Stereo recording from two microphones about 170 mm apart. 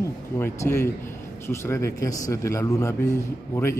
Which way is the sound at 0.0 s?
15° left (ahead or behind).